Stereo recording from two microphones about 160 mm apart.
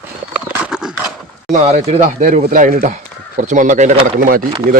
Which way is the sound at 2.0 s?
55° right (ahead or behind).